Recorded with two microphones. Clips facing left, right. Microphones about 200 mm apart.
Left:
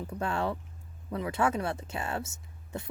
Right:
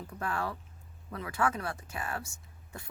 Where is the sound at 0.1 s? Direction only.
25° left (ahead or behind).